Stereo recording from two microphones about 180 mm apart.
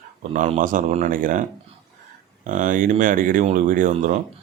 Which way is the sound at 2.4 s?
45° right (ahead or behind).